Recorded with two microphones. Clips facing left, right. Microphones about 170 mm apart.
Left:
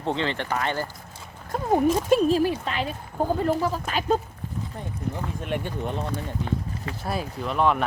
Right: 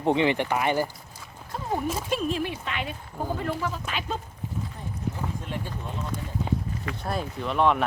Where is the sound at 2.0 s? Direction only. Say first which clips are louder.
Left 8 dB; 40° left (ahead or behind).